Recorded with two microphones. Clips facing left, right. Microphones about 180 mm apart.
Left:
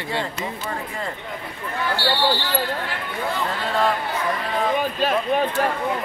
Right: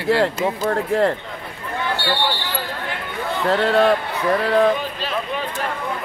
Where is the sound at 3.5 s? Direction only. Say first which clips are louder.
Right 9 dB; 70° right (ahead or behind).